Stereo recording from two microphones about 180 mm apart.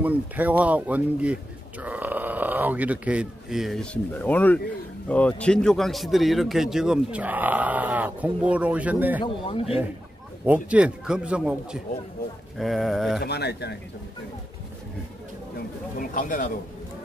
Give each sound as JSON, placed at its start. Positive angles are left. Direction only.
{"t": 0.0, "sound": "a man's voice", "side_deg": -10}
{"t": 9.2, "sound": "speech", "side_deg": 30}
{"t": 10.4, "sound": "a man's voice", "side_deg": -10}
{"t": 13.2, "sound": "speech", "side_deg": 65}
{"t": 16.0, "sound": "speech", "side_deg": 45}